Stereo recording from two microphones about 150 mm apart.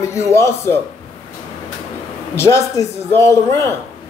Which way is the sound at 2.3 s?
20° left (ahead or behind).